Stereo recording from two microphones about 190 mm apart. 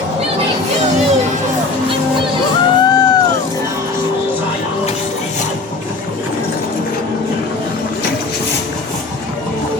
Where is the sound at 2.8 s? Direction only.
20° left (ahead or behind).